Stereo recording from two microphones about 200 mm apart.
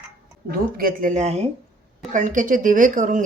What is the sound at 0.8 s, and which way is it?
Speech, 45° right (ahead or behind).